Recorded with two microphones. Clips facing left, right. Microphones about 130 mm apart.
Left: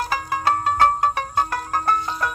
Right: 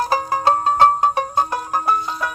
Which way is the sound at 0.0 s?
35° right (ahead or behind).